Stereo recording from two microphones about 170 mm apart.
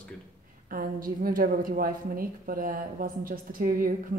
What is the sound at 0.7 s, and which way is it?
A woman's voice, 55° right (ahead or behind).